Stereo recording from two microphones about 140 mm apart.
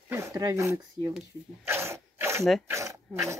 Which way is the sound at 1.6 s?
15° right (ahead or behind).